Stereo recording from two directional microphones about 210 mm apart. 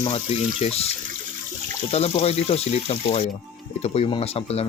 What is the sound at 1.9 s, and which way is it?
Speech, 30° left (ahead or behind).